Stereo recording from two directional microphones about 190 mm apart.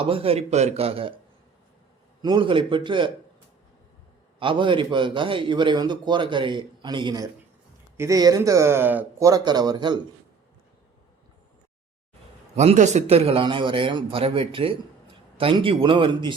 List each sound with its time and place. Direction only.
0.0 s speech: 30° right (ahead or behind)
2.2 s a man's voice: 25° right (ahead or behind)
4.4 s a man's voice: 25° right (ahead or behind)
12.5 s a man's voice: 40° right (ahead or behind)